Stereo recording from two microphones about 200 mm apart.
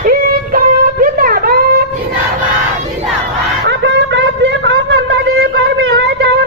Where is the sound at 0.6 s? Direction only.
45° right (ahead or behind).